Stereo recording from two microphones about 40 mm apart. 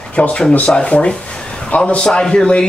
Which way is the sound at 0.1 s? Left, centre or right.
Left.